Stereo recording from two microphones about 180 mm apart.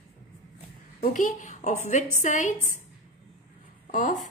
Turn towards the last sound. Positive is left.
turn(degrees=45)  # may be behind; listen again after turning